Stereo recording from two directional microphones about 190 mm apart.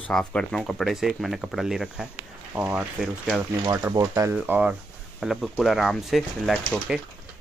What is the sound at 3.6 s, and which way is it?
Speech, 15° right (ahead or behind).